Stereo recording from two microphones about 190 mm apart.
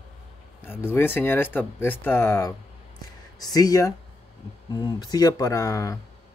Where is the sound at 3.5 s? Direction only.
20° left (ahead or behind).